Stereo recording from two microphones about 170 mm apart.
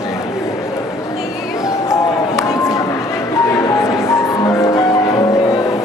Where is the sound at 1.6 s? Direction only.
20° left (ahead or behind).